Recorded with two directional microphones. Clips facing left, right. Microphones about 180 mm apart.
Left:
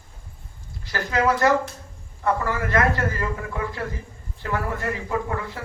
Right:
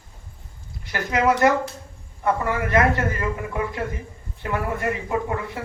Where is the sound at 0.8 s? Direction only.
20° right (ahead or behind).